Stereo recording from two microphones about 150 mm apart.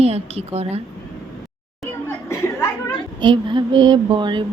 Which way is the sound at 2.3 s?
15° left (ahead or behind).